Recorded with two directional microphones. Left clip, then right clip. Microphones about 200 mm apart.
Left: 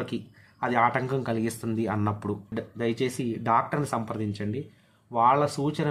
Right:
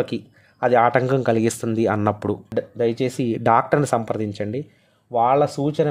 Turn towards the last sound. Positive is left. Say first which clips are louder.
# right 7 dB
turn(degrees=-30)  # may be behind; listen again after turning